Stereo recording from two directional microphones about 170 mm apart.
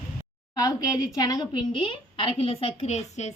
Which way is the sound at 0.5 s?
20° left (ahead or behind).